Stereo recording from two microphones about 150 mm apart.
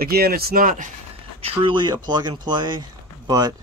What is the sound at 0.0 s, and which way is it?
Speech, 90° right.